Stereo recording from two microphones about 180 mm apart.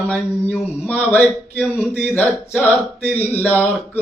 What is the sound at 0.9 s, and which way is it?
Speech, 10° left (ahead or behind).